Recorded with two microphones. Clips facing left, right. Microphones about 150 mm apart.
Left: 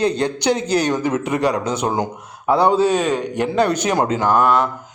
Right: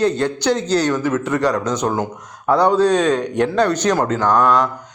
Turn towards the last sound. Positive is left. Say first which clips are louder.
# right 1 dB
turn(degrees=5)  # may be behind; listen again after turning